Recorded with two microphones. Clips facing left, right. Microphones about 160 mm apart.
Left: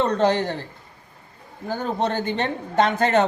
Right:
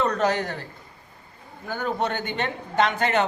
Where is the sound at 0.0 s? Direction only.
30° left (ahead or behind).